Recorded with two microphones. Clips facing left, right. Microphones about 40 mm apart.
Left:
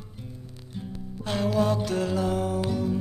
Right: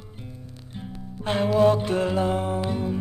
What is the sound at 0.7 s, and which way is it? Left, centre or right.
Music, right.